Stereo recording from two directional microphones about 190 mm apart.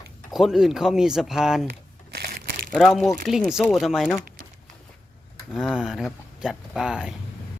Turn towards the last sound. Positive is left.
turn(degrees=-5)  # may be behind; listen again after turning